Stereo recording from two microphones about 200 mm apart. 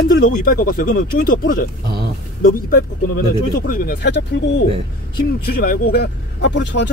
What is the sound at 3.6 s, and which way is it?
Speech, 45° left (ahead or behind).